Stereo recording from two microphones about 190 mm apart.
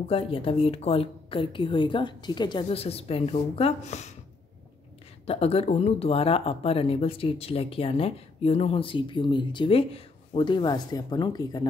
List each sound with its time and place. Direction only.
0.1 s a woman's voice: 30° left (ahead or behind)
5.2 s speech: 30° left (ahead or behind)